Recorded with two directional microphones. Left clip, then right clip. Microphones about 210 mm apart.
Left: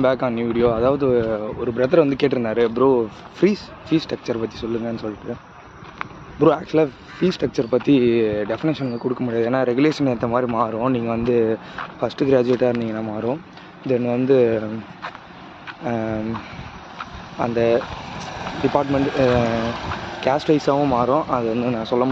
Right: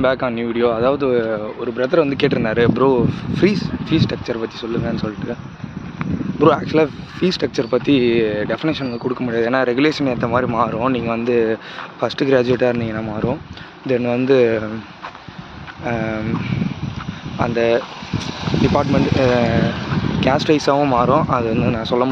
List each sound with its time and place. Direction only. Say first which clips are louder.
0.0 s speech: right 1 dB; centre (ahead or behind)
1.8 s speech: right 1 dB; 5° left (ahead or behind)
6.4 s speech: right 2 dB; 5° right (ahead or behind)
15.8 s speech: right 2 dB; centre (ahead or behind)
18.4 s speech: right 2 dB; 40° left (ahead or behind); by 20.2 s 60° left (ahead or behind)
20.2 s speech: right 2 dB; centre (ahead or behind)